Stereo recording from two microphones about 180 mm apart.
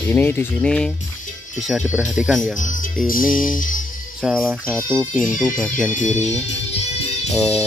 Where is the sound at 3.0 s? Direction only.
50° left (ahead or behind).